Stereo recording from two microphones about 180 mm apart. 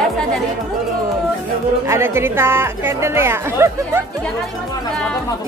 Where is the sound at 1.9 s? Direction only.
15° right (ahead or behind).